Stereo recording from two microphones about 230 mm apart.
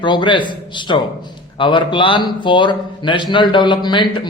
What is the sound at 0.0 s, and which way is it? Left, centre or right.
A man's voice, centre.